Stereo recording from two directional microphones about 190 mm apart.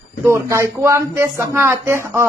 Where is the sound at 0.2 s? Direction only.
15° right (ahead or behind).